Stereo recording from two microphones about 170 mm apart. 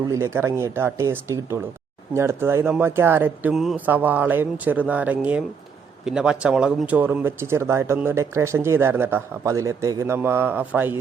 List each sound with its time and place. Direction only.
0.1 s speech: 15° right (ahead or behind)